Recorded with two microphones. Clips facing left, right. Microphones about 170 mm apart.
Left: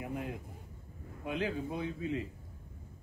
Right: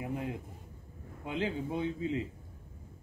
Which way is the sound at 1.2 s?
20° right (ahead or behind).